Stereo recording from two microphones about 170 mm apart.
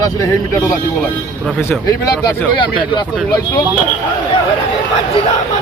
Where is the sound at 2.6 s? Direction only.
30° left (ahead or behind).